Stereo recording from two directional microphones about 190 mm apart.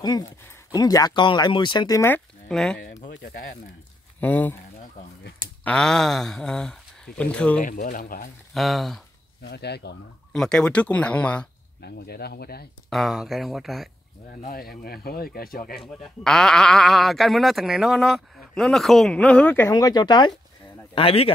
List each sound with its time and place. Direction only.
0.0 s speech: 20° left (ahead or behind); by 2.8 s 5° left (ahead or behind)
4.2 s speech: 10° left (ahead or behind)
5.6 s speech: 5° left (ahead or behind)
7.6 s speech: 45° left (ahead or behind)
8.5 s speech: centre (ahead or behind)
9.4 s speech: 60° left (ahead or behind)
10.3 s speech: 5° left (ahead or behind)
11.8 s speech: 55° left (ahead or behind)
12.9 s speech: centre (ahead or behind)
14.4 s speech: 50° left (ahead or behind)
15.8 s speech: centre (ahead or behind)
19.7 s speech: 20° left (ahead or behind)